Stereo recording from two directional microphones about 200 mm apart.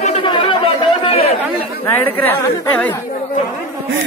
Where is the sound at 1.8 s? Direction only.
10° left (ahead or behind).